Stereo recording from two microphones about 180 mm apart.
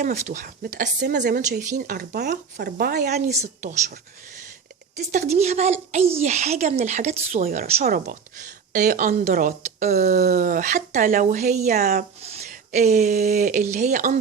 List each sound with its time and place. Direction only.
0.0 s a woman's voice: 45° right (ahead or behind)
5.1 s a woman's voice: 40° right (ahead or behind)
11.8 s speech: 60° right (ahead or behind)
12.2 s speech: 35° right (ahead or behind)